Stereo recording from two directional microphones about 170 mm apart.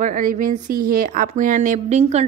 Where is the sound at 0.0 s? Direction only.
55° right (ahead or behind).